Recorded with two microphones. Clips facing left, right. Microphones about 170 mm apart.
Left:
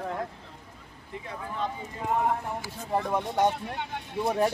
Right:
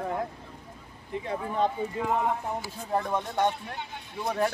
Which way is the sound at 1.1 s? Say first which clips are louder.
Right 6 dB; 20° right (ahead or behind).